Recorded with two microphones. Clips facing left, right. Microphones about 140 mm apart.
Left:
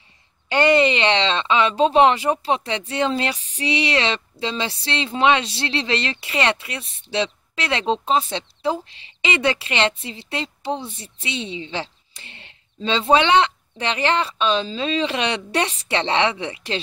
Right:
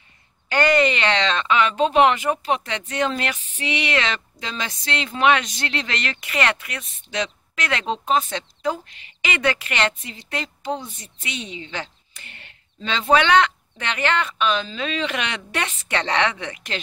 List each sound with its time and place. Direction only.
0.5 s speech: 25° left (ahead or behind)